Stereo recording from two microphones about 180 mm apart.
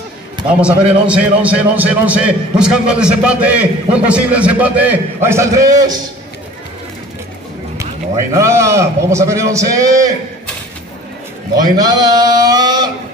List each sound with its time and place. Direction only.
0.6 s a man's voice: 5° right (ahead or behind)
8.3 s a man's voice: 15° right (ahead or behind)
11.5 s a man's voice: 20° right (ahead or behind)